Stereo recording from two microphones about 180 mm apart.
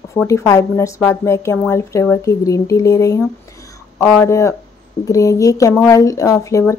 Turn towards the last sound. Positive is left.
turn(degrees=15)  # may be behind; listen again after turning